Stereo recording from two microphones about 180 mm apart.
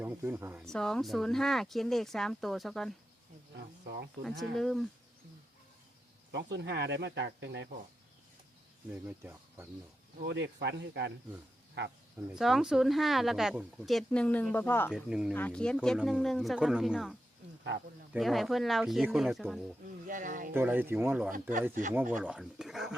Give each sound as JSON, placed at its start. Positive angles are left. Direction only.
{"t": 0.0, "sound": "speech", "side_deg": -10}
{"t": 0.7, "sound": "speech", "side_deg": 5}
{"t": 3.5, "sound": "speech", "side_deg": -65}
{"t": 4.2, "sound": "speech", "side_deg": 0}
{"t": 6.3, "sound": "speech", "side_deg": -75}
{"t": 8.9, "sound": "speech", "side_deg": -10}
{"t": 10.2, "sound": "speech", "side_deg": -75}
{"t": 12.1, "sound": "speech", "side_deg": -5}
{"t": 14.9, "sound": "speech", "side_deg": -5}
{"t": 15.3, "sound": "speech", "side_deg": 10}
{"t": 20.1, "sound": "speech", "side_deg": -45}
{"t": 20.5, "sound": "speech", "side_deg": -10}